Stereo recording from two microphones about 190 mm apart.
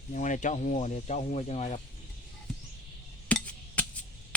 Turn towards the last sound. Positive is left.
turn(degrees=5)  # may be behind; listen again after turning